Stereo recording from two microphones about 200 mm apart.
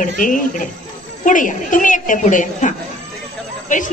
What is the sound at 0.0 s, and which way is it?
A woman's voice, 40° left (ahead or behind).